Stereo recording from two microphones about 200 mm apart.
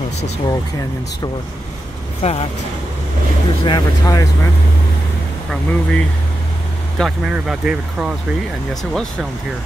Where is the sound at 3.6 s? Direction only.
20° left (ahead or behind).